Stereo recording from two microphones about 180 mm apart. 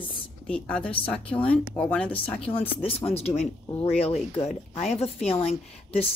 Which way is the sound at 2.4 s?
30° left (ahead or behind).